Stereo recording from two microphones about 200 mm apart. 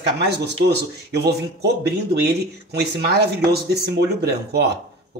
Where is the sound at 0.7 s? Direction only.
55° right (ahead or behind).